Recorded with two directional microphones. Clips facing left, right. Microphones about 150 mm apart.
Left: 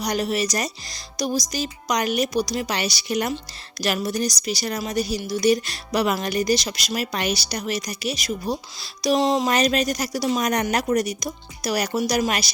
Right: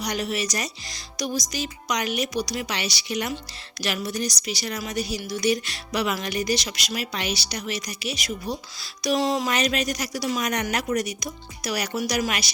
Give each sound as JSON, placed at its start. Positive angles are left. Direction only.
{"t": 0.0, "sound": "speech", "side_deg": 40}
{"t": 9.0, "sound": "music", "side_deg": 30}
{"t": 9.5, "sound": "speech", "side_deg": 35}